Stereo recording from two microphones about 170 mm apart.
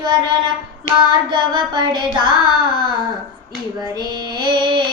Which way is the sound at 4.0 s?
25° right (ahead or behind).